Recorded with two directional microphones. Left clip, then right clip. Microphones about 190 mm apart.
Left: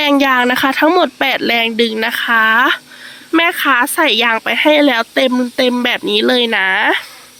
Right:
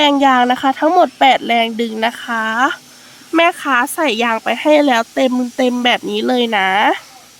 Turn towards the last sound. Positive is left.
turn(degrees=0)  # may be behind; listen again after turning